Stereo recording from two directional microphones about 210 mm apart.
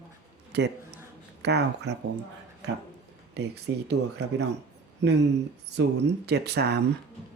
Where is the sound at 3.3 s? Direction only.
50° right (ahead or behind).